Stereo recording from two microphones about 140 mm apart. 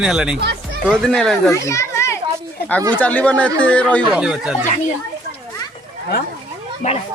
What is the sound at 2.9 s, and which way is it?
Speech, 10° left (ahead or behind).